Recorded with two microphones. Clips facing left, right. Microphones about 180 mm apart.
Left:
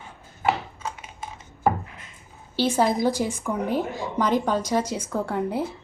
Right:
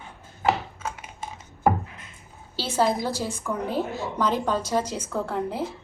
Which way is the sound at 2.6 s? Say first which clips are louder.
Left 3 dB; 15° left (ahead or behind).